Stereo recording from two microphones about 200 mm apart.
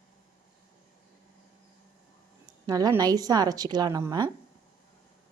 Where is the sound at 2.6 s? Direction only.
15° right (ahead or behind).